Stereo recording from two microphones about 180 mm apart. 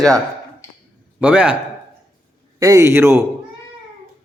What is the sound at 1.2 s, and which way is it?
Speech, 5° right (ahead or behind).